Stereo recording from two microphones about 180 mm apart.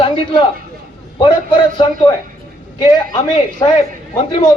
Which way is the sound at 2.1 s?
25° left (ahead or behind).